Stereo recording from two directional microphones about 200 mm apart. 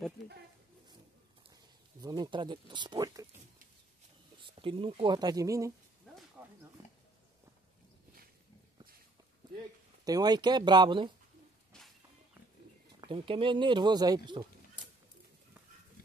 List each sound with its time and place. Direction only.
2.0 s a sound: 20° right (ahead or behind)
4.4 s speech: 25° right (ahead or behind)
6.4 s pig: 10° right (ahead or behind)
10.0 s speech: 20° right (ahead or behind)
13.0 s speech: 25° right (ahead or behind)